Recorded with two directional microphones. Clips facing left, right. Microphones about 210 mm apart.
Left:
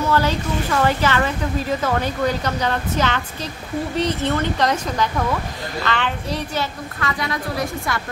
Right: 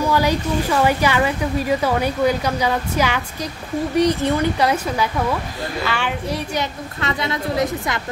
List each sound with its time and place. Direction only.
0.0 s a woman's voice: 10° right (ahead or behind)